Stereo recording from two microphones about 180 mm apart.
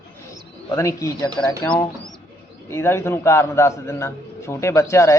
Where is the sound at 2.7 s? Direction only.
15° left (ahead or behind).